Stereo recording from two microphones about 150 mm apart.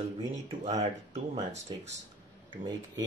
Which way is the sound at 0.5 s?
45° right (ahead or behind).